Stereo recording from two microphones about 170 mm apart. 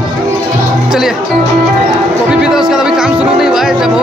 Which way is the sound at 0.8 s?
Centre (ahead or behind).